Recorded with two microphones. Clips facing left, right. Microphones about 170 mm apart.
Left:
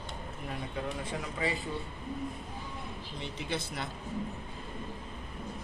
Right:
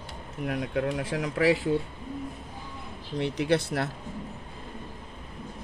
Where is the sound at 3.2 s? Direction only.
75° right (ahead or behind).